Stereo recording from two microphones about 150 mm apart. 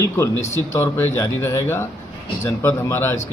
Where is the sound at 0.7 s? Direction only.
15° left (ahead or behind).